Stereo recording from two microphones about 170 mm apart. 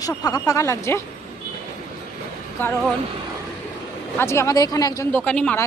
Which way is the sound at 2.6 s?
10° left (ahead or behind).